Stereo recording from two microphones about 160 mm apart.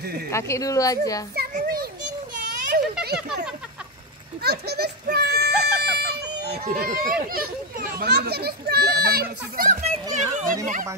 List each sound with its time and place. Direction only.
0.3 s a woman's voice: 20° left (ahead or behind)
1.5 s children playing: 70° right (ahead or behind)
2.3 s a sound: 70° right (ahead or behind); by 3.2 s 85° right
4.4 s a sound: 85° right
6.8 s a child's voice: 65° right (ahead or behind)
9.7 s a child's voice: 45° right (ahead or behind)